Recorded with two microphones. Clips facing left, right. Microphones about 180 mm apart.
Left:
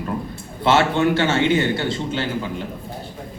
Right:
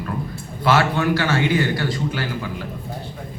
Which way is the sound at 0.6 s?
25° left (ahead or behind).